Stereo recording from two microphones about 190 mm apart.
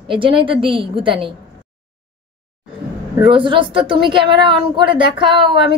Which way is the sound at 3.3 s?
25° right (ahead or behind).